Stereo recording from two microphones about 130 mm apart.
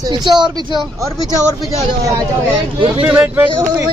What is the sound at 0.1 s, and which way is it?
Speech, 35° right (ahead or behind).